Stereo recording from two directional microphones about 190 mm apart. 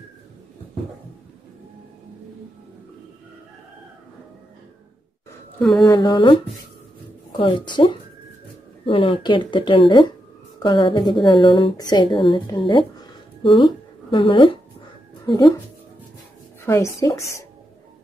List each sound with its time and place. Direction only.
5.6 s a sound: centre (ahead or behind)
5.9 s a woman's voice: 20° left (ahead or behind)
7.3 s a woman's voice: 25° left (ahead or behind)
16.6 s a woman's voice: 15° left (ahead or behind)